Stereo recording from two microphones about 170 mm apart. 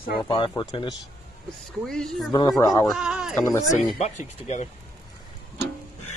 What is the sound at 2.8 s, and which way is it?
Speech, 5° right (ahead or behind).